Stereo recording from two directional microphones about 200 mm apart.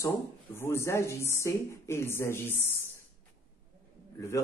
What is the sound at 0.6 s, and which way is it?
Speech, 10° left (ahead or behind).